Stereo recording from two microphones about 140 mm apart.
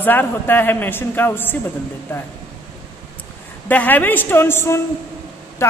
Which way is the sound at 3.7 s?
10° left (ahead or behind).